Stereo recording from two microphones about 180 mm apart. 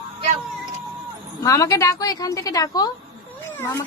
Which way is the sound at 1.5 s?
20° left (ahead or behind).